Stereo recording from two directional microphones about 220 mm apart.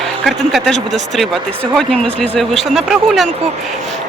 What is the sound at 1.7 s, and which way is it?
Speech, 5° left (ahead or behind).